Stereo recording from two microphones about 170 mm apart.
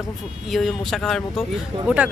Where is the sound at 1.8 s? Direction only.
10° right (ahead or behind).